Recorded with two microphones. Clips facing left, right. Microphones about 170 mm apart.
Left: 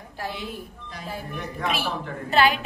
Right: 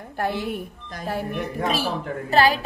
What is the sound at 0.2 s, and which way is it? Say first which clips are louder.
Speech: right 7 dB; 55° right (ahead or behind).